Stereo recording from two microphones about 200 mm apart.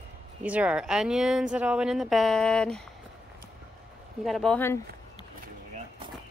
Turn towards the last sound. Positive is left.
turn(degrees=5)  # may be behind; listen again after turning